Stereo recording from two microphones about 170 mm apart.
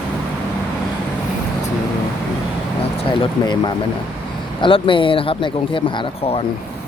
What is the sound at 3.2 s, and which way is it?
Speech, 25° left (ahead or behind).